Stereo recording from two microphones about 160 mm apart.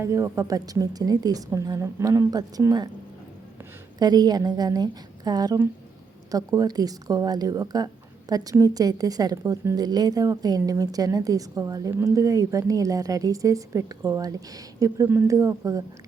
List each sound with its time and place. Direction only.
0.0 s a woman's voice: 20° right (ahead or behind)
3.9 s a woman's voice: 25° right (ahead or behind)